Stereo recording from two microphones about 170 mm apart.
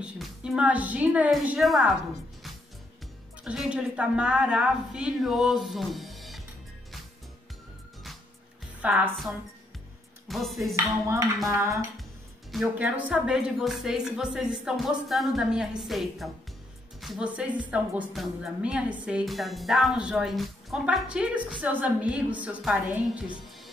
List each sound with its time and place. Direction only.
0.0 s a woman's voice: 5° right (ahead or behind)
3.4 s a woman's voice: 5° right (ahead or behind)
8.8 s a woman's voice: 10° right (ahead or behind)
11.4 s a woman's voice: 15° right (ahead or behind)
12.4 s a woman's voice: centre (ahead or behind)